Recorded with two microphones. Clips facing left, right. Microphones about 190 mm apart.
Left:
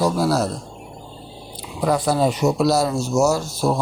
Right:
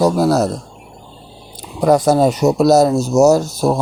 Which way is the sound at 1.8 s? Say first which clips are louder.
Right 7 dB; 45° right (ahead or behind).